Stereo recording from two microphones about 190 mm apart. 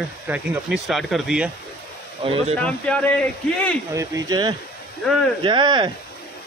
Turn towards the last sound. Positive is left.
turn(degrees=-25)  # may be behind; listen again after turning